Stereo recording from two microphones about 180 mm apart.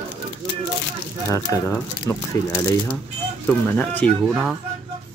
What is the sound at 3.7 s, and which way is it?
Speech, 10° left (ahead or behind).